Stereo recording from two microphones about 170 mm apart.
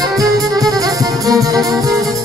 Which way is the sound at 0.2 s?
20° right (ahead or behind).